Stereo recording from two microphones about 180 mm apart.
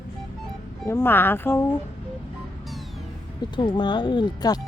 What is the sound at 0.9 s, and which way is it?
Speech, 10° left (ahead or behind).